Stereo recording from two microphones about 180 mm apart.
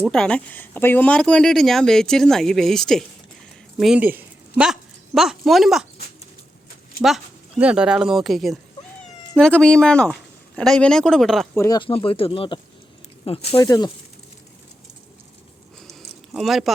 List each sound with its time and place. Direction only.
0.0 s speech: 5° left (ahead or behind)
7.6 s speech: 5° right (ahead or behind)
11.5 s speech: 15° left (ahead or behind)
11.8 s speech: 30° left (ahead or behind)
13.6 s speech: 20° left (ahead or behind)
15.9 s a sound: centre (ahead or behind)